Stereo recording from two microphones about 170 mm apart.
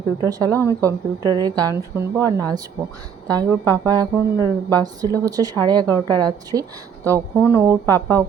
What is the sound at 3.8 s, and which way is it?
A woman's voice, 25° right (ahead or behind).